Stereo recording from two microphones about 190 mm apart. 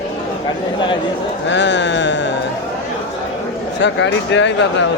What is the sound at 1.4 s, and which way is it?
Speech, 70° left (ahead or behind).